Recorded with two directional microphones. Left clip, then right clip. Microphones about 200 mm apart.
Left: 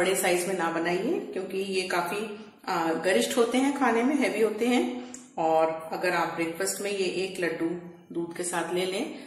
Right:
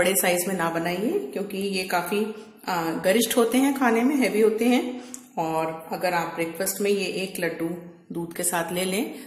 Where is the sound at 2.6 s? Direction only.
45° right (ahead or behind).